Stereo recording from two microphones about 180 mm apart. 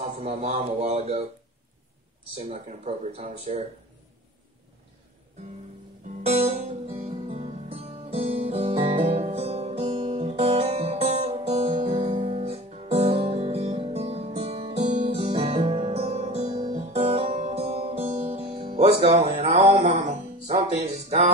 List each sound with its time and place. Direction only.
0.0 s speech: 35° right (ahead or behind)
2.3 s speech: 35° right (ahead or behind)
6.2 s music: 35° right (ahead or behind)